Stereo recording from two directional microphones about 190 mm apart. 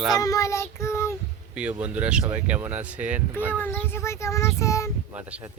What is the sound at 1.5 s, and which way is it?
Speech, 5° right (ahead or behind).